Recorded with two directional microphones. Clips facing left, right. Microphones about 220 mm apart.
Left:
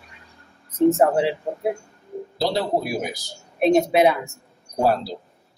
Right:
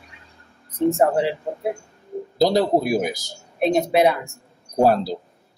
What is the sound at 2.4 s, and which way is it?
Speech, 45° right (ahead or behind).